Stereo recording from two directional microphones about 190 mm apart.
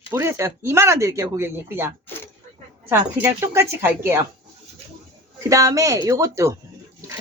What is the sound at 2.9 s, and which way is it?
Speech, 15° right (ahead or behind).